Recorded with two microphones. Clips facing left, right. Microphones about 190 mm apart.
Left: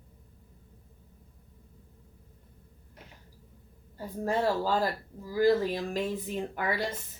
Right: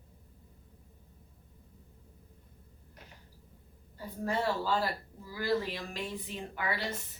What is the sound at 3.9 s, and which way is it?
Speech, 40° left (ahead or behind).